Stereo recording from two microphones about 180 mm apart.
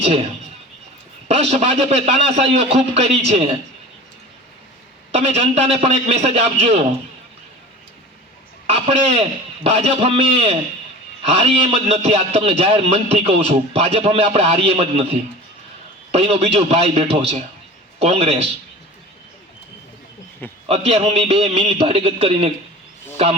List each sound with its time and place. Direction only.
1.3 s a man's voice: 35° right (ahead or behind)
5.1 s a man's voice: 35° right (ahead or behind)
8.6 s a man's voice: 35° right (ahead or behind)
20.7 s a man's voice: 35° right (ahead or behind)